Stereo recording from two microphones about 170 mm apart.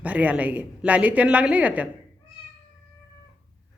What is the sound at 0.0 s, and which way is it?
A woman's voice, 10° right (ahead or behind).